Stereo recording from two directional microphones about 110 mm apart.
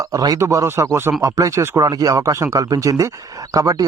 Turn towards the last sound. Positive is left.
turn(degrees=-30)  # may be behind; listen again after turning